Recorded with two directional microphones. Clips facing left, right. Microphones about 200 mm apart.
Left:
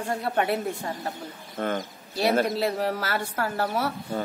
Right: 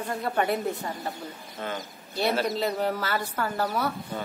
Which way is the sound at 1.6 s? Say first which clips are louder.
Left 6 dB; 55° left (ahead or behind).